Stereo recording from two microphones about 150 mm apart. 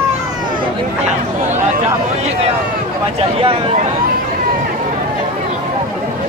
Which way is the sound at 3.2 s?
40° right (ahead or behind).